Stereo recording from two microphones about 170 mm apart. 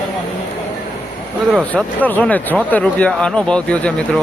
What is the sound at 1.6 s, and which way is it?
Speech, 10° left (ahead or behind).